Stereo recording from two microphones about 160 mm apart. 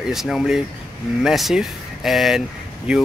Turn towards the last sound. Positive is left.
turn(degrees=-5)  # may be behind; listen again after turning